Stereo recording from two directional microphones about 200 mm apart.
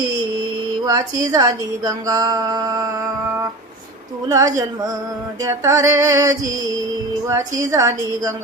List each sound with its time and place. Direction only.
0.9 s speech: 20° right (ahead or behind)
4.3 s female singing: 15° right (ahead or behind)